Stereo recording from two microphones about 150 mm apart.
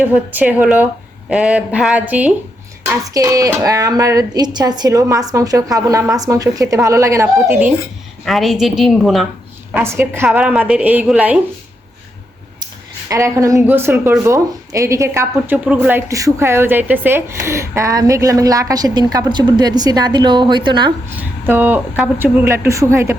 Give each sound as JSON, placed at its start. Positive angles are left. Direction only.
{"t": 0.0, "sound": "speech", "side_deg": -10}
{"t": 2.8, "sound": "speech", "side_deg": -20}
{"t": 8.2, "sound": "a woman's voice", "side_deg": 0}
{"t": 9.7, "sound": "speech", "side_deg": -15}
{"t": 13.1, "sound": "speech", "side_deg": -20}
{"t": 21.2, "sound": "speech", "side_deg": -10}